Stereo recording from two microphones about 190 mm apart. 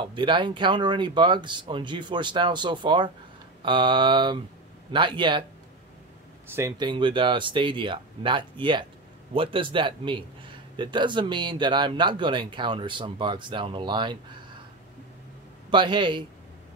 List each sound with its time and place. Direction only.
0.0 s speech: 25° right (ahead or behind)
6.5 s speech: 20° right (ahead or behind)
15.7 s speech: 25° right (ahead or behind)